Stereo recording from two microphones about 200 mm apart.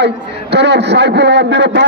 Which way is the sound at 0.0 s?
60° right (ahead or behind).